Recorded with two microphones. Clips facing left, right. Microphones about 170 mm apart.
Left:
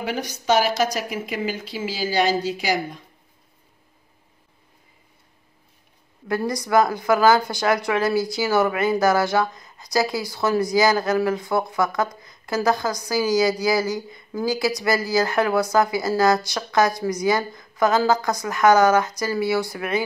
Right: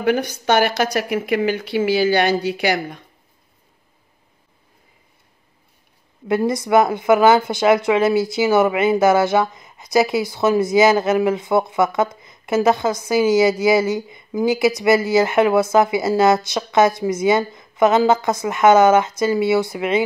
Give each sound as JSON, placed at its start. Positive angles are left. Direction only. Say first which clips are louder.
{"t": 0.0, "sound": "speech", "louder": "right 8 dB", "side_deg": -60}
{"t": 6.2, "sound": "speech", "louder": "right 5 dB", "side_deg": -25}